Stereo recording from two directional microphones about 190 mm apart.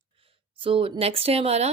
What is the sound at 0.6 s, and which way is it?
A woman's voice, 30° right (ahead or behind).